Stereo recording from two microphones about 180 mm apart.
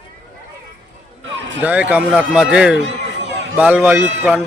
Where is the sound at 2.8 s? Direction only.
90° right.